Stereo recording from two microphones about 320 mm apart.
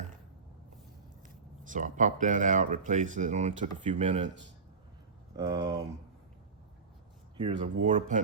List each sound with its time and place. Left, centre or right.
1.6 s speech: right
5.4 s speech: centre
7.3 s speech: centre